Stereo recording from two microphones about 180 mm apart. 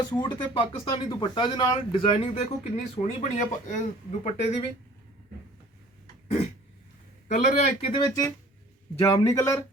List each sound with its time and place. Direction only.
0.0 s speech: 25° left (ahead or behind)
6.2 s throat clearing: 35° left (ahead or behind)
7.3 s speech: 40° left (ahead or behind)
9.0 s a man's voice: 15° left (ahead or behind)